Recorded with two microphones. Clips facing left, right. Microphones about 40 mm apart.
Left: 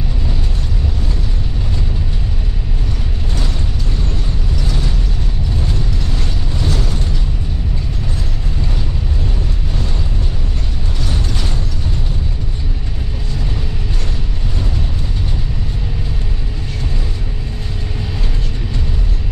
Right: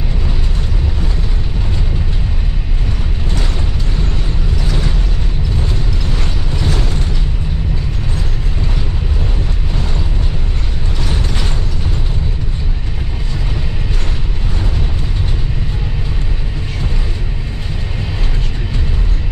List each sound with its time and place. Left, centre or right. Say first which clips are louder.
6.1 s mechanisms: right 1 dB; right